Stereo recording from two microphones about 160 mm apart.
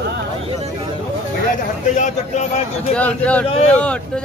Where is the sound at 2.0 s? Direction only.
45° left (ahead or behind).